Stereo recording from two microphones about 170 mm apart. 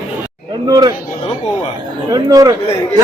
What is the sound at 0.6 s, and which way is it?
Chatter, 25° right (ahead or behind).